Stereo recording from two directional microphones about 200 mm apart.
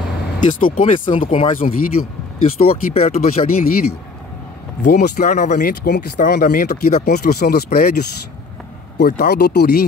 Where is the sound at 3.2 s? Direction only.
45° left (ahead or behind).